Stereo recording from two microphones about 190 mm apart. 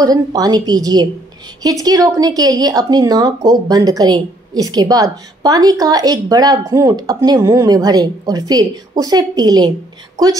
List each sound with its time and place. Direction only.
0.0 s speech: 20° right (ahead or behind)